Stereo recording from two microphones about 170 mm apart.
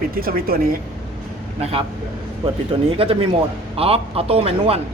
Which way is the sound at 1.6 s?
35° right (ahead or behind).